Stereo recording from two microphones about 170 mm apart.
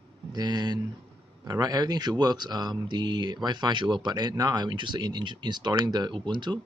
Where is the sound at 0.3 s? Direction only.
25° right (ahead or behind).